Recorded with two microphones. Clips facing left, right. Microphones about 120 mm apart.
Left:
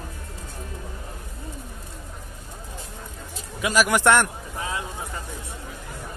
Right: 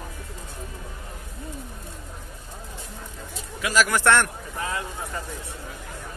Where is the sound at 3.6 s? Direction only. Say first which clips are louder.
Left 1 dB; 20° left (ahead or behind).